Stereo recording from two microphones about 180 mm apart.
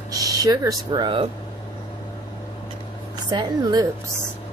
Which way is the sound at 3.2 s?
25° right (ahead or behind).